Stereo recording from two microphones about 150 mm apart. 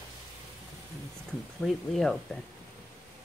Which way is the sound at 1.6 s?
Centre (ahead or behind).